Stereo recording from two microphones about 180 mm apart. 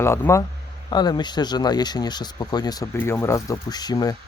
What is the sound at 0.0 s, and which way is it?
Speech, 15° left (ahead or behind).